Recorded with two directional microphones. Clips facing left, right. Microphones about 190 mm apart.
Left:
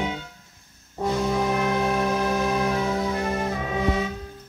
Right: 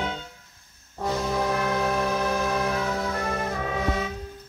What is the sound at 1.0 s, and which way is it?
Brass instrument, 20° left (ahead or behind).